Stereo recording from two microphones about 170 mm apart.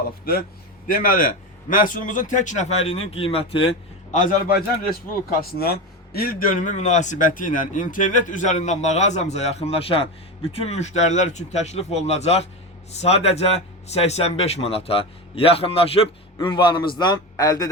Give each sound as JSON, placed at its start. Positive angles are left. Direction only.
{"t": 0.3, "sound": "a man's voice", "side_deg": 60}
{"t": 4.1, "sound": "a man's voice", "side_deg": 50}